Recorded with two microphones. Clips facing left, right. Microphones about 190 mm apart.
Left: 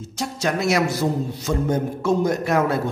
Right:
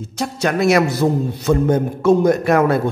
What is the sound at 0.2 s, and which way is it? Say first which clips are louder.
A man's voice: right 5 dB; 60° right (ahead or behind).